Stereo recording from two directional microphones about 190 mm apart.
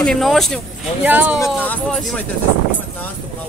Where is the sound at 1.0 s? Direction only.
10° right (ahead or behind).